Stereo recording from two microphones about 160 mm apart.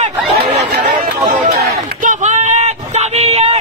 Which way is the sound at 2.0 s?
45° right (ahead or behind).